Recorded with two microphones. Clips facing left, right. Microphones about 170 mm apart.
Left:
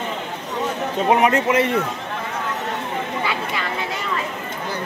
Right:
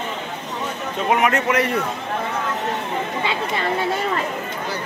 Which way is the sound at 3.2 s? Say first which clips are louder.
Right 2 dB; 25° right (ahead or behind).